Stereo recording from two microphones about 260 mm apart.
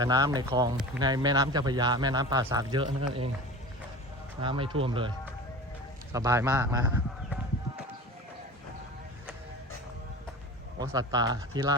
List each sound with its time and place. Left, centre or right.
0.0 s a man's voice: centre
4.4 s speech: centre
6.1 s a man's voice: centre
10.8 s a man's voice: centre